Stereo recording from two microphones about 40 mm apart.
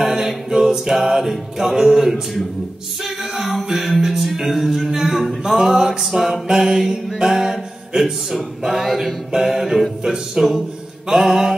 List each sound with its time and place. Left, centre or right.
0.0 s a capella: centre
6.0 s music: centre
6.4 s mantra: centre
7.2 s music: centre